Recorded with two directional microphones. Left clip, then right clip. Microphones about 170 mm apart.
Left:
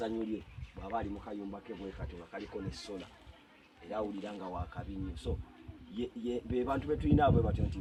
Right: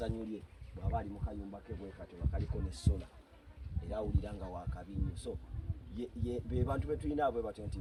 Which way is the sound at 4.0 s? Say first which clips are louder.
Left 3 dB; 20° right (ahead or behind).